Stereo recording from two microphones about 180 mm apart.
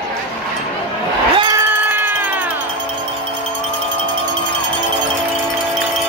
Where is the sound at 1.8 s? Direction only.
10° right (ahead or behind).